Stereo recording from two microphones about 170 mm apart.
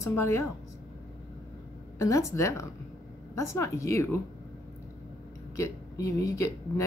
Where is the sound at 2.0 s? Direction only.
15° left (ahead or behind).